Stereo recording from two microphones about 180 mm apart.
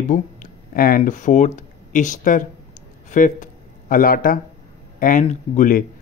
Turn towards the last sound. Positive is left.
turn(degrees=45)  # may be behind; listen again after turning